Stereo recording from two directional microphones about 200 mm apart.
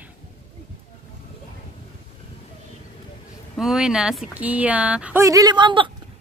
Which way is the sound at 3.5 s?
5° right (ahead or behind).